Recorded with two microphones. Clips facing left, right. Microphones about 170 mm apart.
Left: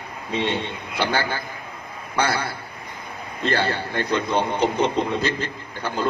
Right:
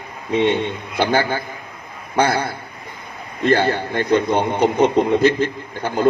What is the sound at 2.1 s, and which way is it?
A man's voice, 50° right (ahead or behind).